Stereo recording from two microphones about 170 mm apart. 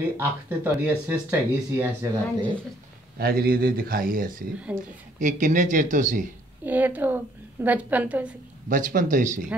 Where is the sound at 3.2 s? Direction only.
60° right (ahead or behind).